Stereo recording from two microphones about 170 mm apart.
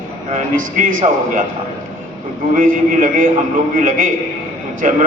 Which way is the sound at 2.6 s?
55° right (ahead or behind).